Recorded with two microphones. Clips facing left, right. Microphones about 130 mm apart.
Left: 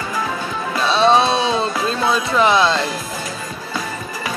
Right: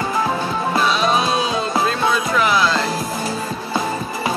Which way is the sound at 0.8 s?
30° left (ahead or behind).